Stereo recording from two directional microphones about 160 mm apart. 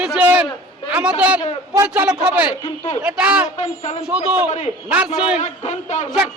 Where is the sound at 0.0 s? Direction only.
10° right (ahead or behind).